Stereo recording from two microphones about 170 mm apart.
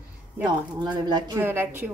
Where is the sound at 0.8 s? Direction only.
25° right (ahead or behind).